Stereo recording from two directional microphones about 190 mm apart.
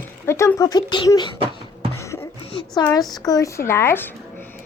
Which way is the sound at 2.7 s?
20° left (ahead or behind).